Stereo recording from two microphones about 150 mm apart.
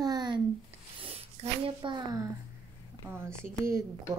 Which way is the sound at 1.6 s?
30° right (ahead or behind).